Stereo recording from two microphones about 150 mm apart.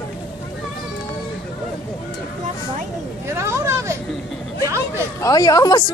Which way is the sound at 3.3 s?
20° right (ahead or behind).